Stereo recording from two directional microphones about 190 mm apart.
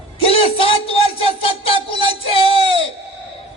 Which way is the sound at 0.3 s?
30° left (ahead or behind).